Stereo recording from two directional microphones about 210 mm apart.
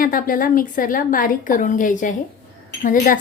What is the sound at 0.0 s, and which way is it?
A woman's voice, 40° left (ahead or behind).